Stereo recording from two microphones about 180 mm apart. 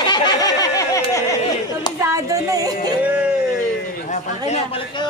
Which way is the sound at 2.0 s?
15° right (ahead or behind).